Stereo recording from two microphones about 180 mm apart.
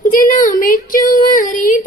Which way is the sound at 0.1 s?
50° left (ahead or behind).